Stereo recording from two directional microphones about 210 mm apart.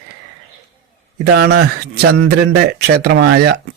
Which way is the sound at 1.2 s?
50° right (ahead or behind).